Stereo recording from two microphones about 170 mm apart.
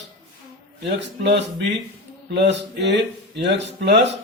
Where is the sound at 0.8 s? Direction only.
85° right.